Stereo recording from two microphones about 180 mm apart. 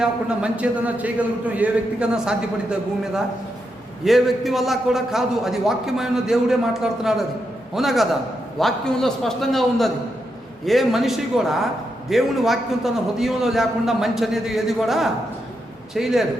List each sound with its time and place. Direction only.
0.0 s a man's voice: 5° right (ahead or behind)